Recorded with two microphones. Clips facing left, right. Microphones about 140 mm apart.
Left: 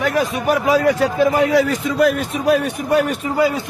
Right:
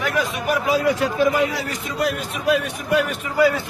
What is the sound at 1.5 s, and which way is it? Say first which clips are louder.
Speech: left 11 dB; 75° left (ahead or behind).